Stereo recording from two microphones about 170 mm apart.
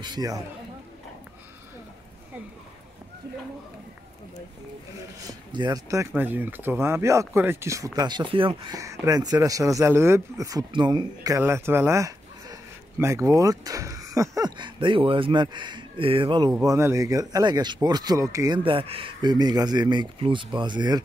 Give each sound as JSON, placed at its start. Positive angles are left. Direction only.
{"t": 0.0, "sound": "speech", "side_deg": -25}
{"t": 5.5, "sound": "speech", "side_deg": -25}
{"t": 8.7, "sound": "speech", "side_deg": -20}
{"t": 16.6, "sound": "speech", "side_deg": -15}